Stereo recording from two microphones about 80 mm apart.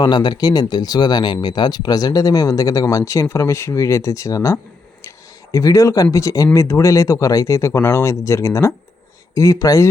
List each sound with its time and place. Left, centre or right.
0.0 s speech: left